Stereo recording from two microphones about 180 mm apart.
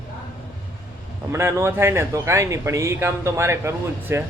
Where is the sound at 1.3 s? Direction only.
15° right (ahead or behind).